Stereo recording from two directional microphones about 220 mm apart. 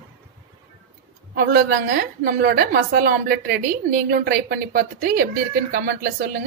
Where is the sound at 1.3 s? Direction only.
45° right (ahead or behind).